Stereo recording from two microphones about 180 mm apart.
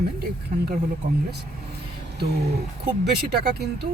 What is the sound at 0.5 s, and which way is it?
Speech, 40° right (ahead or behind).